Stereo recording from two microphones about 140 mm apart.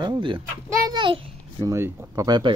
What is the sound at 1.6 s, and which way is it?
Speech, 20° right (ahead or behind).